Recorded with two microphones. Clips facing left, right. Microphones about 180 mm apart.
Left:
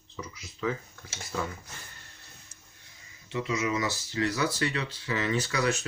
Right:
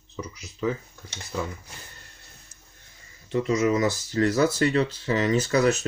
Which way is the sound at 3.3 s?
50° right (ahead or behind).